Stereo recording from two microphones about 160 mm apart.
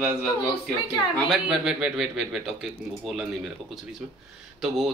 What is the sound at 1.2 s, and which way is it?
A man's voice, centre (ahead or behind).